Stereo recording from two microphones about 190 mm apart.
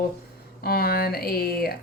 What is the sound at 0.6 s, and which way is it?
Speech, 55° left (ahead or behind).